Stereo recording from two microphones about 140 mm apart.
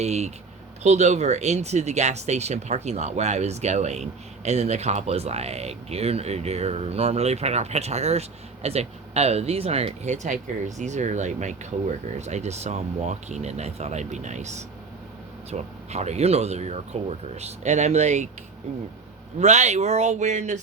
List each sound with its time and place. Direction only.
0.0 s speech: 50° right (ahead or behind)
19.4 s speech: 55° right (ahead or behind)